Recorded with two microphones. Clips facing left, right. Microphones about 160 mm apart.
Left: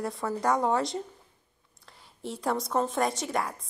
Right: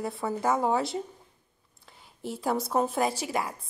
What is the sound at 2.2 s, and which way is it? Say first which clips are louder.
A woman's voice: right 1 dB; centre (ahead or behind).